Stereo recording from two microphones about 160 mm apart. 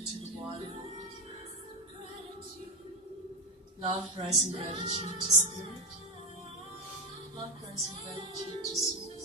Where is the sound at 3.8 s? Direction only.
40° right (ahead or behind).